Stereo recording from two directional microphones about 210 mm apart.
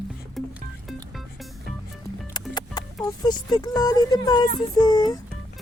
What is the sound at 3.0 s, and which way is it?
Speech, 20° left (ahead or behind).